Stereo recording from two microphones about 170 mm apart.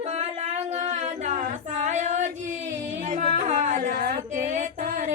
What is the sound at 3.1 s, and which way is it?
Music, 50° right (ahead or behind).